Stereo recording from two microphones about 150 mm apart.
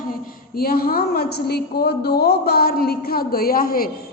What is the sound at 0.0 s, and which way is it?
A woman's voice, 70° left (ahead or behind).